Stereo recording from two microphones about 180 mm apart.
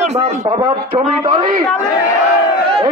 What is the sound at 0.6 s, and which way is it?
Speech, 25° right (ahead or behind).